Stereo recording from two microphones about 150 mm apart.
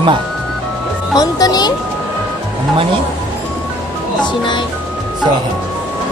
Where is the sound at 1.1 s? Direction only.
25° left (ahead or behind).